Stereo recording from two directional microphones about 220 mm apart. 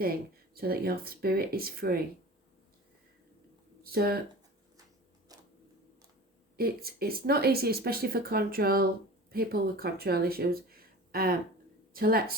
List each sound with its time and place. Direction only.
0.0 s speech: 45° right (ahead or behind)
3.9 s speech: 45° right (ahead or behind)
5.3 s a sound: 15° right (ahead or behind)
6.6 s speech: 45° right (ahead or behind)